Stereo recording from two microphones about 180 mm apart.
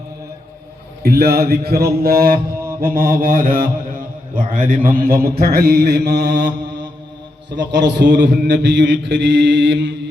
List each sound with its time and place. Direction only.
1.0 s a man's voice: 60° right (ahead or behind)
2.8 s mantra: 55° right (ahead or behind)
7.5 s a man's voice: 75° right (ahead or behind)